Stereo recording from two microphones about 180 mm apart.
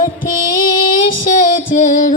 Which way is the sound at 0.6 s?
50° left (ahead or behind).